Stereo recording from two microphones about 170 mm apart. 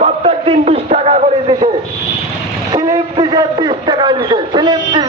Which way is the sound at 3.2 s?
20° right (ahead or behind).